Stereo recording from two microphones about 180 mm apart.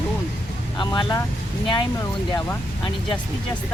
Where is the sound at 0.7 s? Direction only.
25° left (ahead or behind).